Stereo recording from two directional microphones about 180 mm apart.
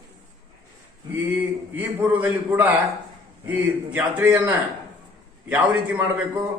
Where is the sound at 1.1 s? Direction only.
10° right (ahead or behind).